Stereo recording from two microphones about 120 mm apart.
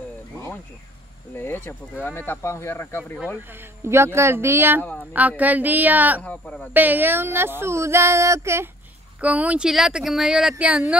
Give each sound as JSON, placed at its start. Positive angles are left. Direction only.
{"t": 1.3, "sound": "speech", "side_deg": 20}
{"t": 3.8, "sound": "a woman's voice", "side_deg": -20}
{"t": 6.2, "sound": "speech", "side_deg": 10}
{"t": 6.7, "sound": "speech", "side_deg": -15}
{"t": 9.2, "sound": "speech", "side_deg": -10}